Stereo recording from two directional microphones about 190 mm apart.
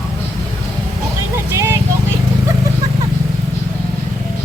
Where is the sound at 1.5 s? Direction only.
15° right (ahead or behind).